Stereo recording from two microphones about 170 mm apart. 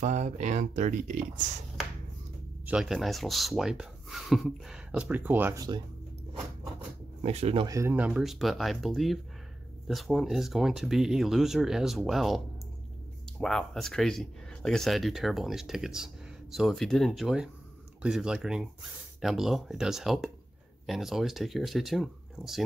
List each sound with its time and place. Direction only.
0.0 s speech: 45° right (ahead or behind)
2.6 s speech: 5° right (ahead or behind)
7.2 s speech: 35° right (ahead or behind)
7.6 s speech: 15° right (ahead or behind); by 12.4 s centre (ahead or behind)
13.4 s speech: 5° left (ahead or behind)